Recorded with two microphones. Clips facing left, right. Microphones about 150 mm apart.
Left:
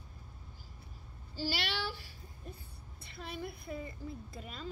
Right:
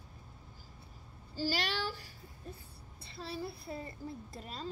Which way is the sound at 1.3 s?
40° right (ahead or behind).